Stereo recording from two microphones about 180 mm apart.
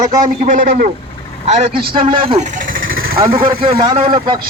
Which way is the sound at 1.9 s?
25° right (ahead or behind).